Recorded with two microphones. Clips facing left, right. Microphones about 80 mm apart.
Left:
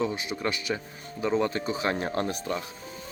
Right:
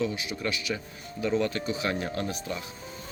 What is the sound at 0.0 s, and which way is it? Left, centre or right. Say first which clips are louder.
Speech: left 1 dB; left.